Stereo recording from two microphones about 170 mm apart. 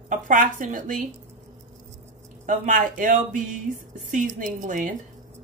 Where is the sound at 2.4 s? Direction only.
50° right (ahead or behind).